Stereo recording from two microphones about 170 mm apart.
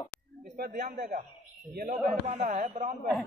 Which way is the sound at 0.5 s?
65° right (ahead or behind).